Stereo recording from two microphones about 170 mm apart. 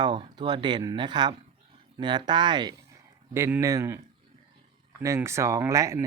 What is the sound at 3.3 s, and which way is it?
Speech, 15° right (ahead or behind).